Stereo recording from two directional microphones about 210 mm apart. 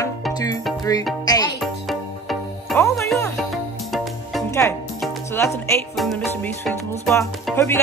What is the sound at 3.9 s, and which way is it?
Music, centre (ahead or behind).